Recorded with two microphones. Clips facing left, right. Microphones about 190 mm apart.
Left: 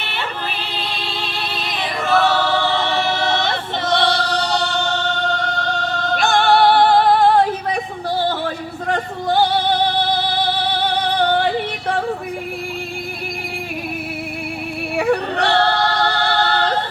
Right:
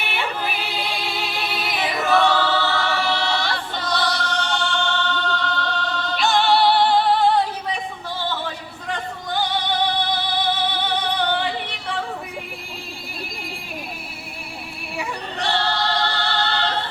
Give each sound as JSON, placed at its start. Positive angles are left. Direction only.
{"t": 0.0, "sound": "music", "side_deg": -10}
{"t": 11.2, "sound": "yodeling", "side_deg": 45}
{"t": 14.9, "sound": "music", "side_deg": 60}